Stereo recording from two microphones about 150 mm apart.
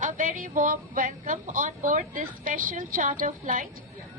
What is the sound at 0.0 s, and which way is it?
A woman's voice, 60° right (ahead or behind).